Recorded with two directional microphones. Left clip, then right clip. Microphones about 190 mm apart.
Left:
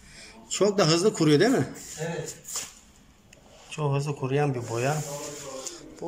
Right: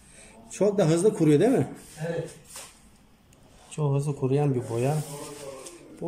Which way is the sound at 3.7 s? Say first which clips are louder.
Even; 20° right (ahead or behind).